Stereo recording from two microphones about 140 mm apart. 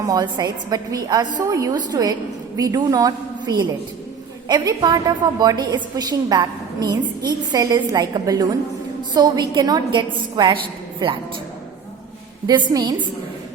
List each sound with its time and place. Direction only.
0.1 s a woman's voice: 25° right (ahead or behind)
12.5 s a woman's voice: 30° right (ahead or behind)